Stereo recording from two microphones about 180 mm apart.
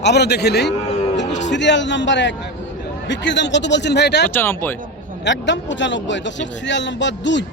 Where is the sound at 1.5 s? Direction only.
80° left.